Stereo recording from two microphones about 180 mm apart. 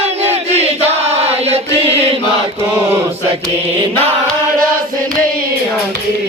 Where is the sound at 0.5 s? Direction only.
35° right (ahead or behind).